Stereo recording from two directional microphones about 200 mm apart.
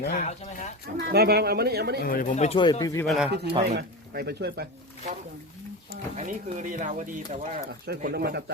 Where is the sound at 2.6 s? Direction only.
20° left (ahead or behind).